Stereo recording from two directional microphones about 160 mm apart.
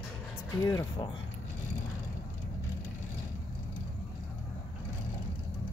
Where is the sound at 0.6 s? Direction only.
20° left (ahead or behind).